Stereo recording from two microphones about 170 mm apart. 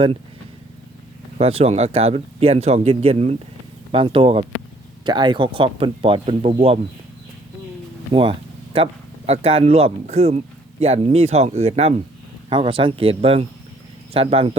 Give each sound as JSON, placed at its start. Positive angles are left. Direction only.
{"t": 1.4, "sound": "speech", "side_deg": -35}
{"t": 8.1, "sound": "speech", "side_deg": -30}